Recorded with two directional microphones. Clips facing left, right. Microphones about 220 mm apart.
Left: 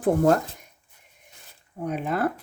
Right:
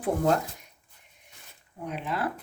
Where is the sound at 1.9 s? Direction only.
45° left (ahead or behind).